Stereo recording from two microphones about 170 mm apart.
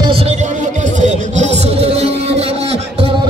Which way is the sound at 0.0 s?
35° right (ahead or behind).